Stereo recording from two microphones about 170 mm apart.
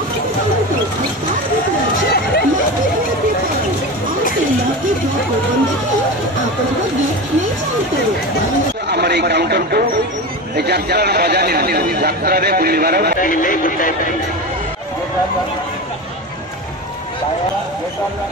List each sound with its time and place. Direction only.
2.0 s a sound: 65° left (ahead or behind)
8.8 s speech: 75° right (ahead or behind)
13.2 s speech: 50° left (ahead or behind)